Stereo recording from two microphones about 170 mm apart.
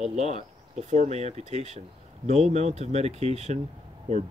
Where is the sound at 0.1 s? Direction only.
40° right (ahead or behind).